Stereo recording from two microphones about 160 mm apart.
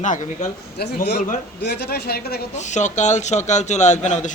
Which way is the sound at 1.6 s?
90° left.